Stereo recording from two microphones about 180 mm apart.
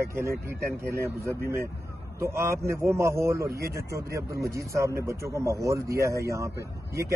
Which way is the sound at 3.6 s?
60° right (ahead or behind).